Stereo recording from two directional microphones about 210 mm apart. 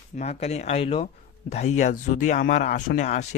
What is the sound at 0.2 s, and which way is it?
Speech, 30° left (ahead or behind).